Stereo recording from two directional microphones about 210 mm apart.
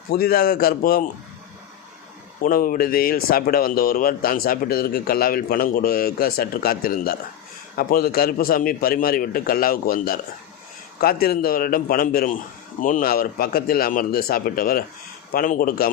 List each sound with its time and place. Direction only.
0.1 s a man's voice: 45° left (ahead or behind)
2.4 s a man's voice: 40° left (ahead or behind)